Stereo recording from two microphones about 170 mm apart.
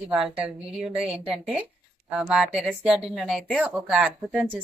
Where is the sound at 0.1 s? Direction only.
5° right (ahead or behind).